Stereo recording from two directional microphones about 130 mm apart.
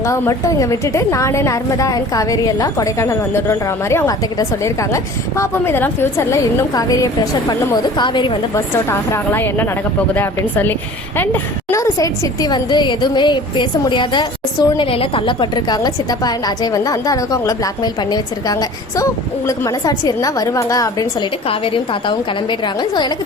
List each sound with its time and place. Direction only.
0.0 s a woman's voice: 25° left (ahead or behind)
8.5 s a woman's voice: 20° left (ahead or behind)
21.4 s a woman's voice: 45° left (ahead or behind)